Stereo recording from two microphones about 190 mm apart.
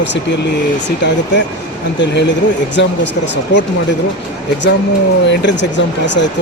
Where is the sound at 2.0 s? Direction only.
65° left (ahead or behind).